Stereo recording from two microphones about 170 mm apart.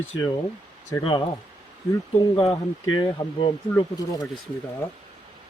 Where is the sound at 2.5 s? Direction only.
25° left (ahead or behind).